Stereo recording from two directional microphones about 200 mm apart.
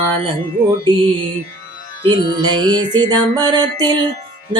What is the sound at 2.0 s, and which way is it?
Music, 25° right (ahead or behind).